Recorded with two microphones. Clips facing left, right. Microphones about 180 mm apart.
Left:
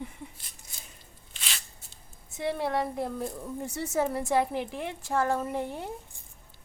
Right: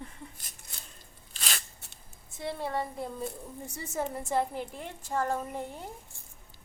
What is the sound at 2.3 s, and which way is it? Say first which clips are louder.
A woman's voice: left 4 dB; 75° left (ahead or behind).